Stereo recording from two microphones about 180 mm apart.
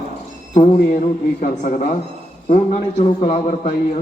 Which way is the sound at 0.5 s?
45° left (ahead or behind).